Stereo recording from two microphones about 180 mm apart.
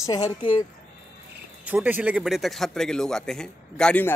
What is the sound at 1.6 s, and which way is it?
Speech, 10° right (ahead or behind).